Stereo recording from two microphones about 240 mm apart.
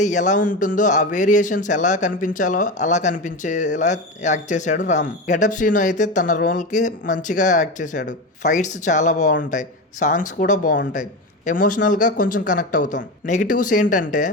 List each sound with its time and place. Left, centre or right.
0.0 s speech: left